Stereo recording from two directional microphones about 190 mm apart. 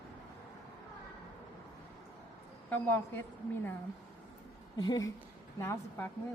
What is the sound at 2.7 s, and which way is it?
Speech, 10° left (ahead or behind).